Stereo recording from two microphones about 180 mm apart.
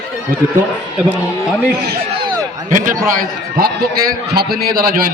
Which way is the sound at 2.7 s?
45° right (ahead or behind).